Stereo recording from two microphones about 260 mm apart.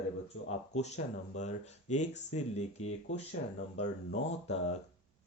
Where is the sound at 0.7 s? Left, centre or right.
Left.